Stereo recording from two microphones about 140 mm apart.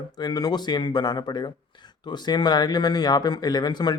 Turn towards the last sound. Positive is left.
turn(degrees=30)  # may be behind; listen again after turning